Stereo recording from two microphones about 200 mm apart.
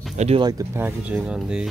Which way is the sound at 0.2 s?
30° right (ahead or behind).